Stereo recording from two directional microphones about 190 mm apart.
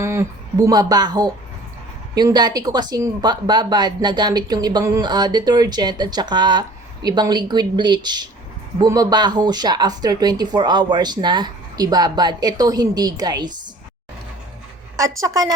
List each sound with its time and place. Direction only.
0.0 s speech: 15° right (ahead or behind)
14.9 s a woman's voice: 15° right (ahead or behind)